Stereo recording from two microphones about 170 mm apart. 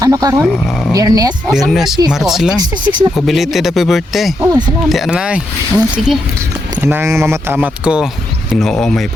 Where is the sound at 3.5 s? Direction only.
Centre (ahead or behind).